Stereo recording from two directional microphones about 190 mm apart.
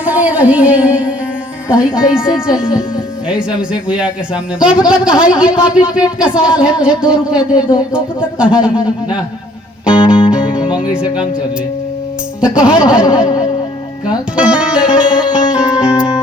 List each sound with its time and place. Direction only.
0.0 s music: 10° right (ahead or behind)
1.7 s a man's voice: 5° right (ahead or behind)
3.2 s a man's voice: 5° right (ahead or behind)
9.8 s music: 5° right (ahead or behind)
10.8 s speech: 20° left (ahead or behind)
12.4 s a man's voice: 5° right (ahead or behind)
13.1 s speech: 25° left (ahead or behind)
14.3 s music: 5° right (ahead or behind)